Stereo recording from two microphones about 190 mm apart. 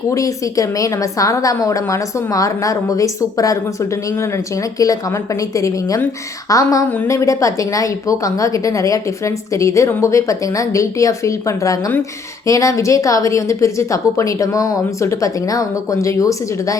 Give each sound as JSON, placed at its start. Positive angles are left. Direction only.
{"t": 0.1, "sound": "a woman's voice", "side_deg": 15}